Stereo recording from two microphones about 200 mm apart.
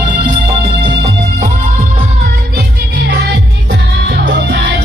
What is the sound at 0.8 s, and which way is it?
Music, 30° right (ahead or behind).